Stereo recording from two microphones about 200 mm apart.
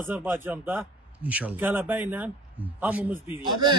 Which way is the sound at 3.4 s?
20° right (ahead or behind).